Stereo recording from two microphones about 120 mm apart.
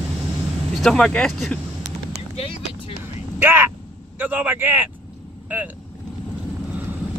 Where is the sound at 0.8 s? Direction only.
5° left (ahead or behind).